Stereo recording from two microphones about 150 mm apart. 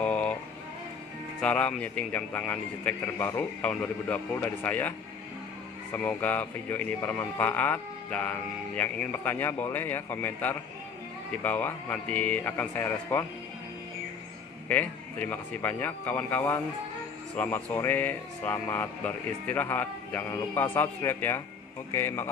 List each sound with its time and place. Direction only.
0.0 s a sound: 10° left (ahead or behind)
1.4 s speech: 10° left (ahead or behind)
5.9 s speech: 10° left (ahead or behind)
14.7 s speech: 10° left (ahead or behind)